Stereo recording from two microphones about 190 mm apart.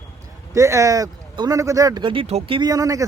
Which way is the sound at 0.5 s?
15° right (ahead or behind).